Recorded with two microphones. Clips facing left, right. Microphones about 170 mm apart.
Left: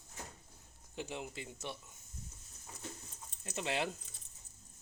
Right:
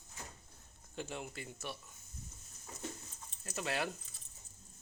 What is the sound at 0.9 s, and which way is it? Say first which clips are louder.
Speech: left 1 dB; 15° left (ahead or behind).